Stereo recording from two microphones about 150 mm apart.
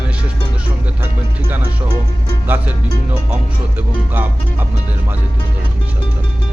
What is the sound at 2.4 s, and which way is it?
Speech, 10° right (ahead or behind).